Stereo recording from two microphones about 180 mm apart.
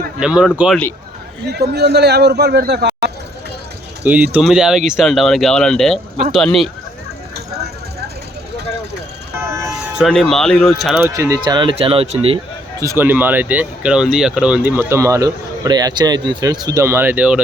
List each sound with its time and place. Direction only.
0.2 s speech: 5° right (ahead or behind)
1.5 s a man's voice: 65° right (ahead or behind)
4.0 s speech: 10° right (ahead or behind)
7.3 s vehicle: 65° right (ahead or behind)
9.7 s speech: centre (ahead or behind)
11.1 s speech: 20° right (ahead or behind)
12.8 s speech: 15° right (ahead or behind)